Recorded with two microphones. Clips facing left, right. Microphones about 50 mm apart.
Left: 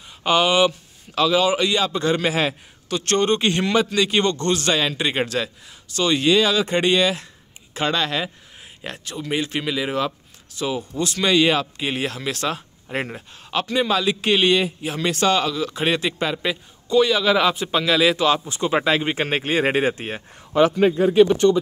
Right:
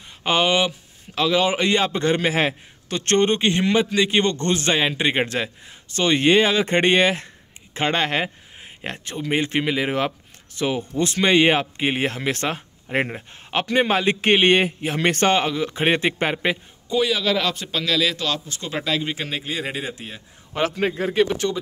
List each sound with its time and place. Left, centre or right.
0.2 s speech: right
1.3 s a man's voice: right
16.9 s a man's voice: centre
17.2 s a man's voice: centre; by 19.2 s left
19.2 s speech: left